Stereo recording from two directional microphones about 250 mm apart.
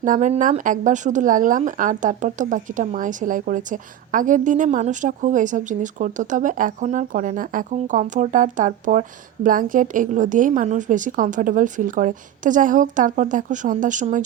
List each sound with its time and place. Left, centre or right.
0.0 s speech: right